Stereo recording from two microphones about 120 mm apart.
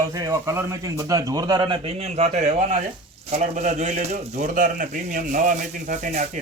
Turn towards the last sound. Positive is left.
turn(degrees=-90)